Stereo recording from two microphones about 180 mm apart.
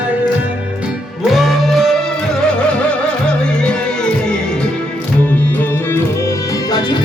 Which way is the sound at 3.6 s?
5° left (ahead or behind).